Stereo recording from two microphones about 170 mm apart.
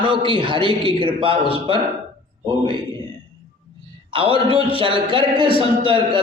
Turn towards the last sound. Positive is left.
turn(degrees=-30)  # may be behind; listen again after turning